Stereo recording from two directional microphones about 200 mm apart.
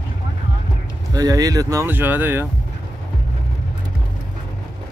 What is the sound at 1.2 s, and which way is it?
Speech, 15° right (ahead or behind).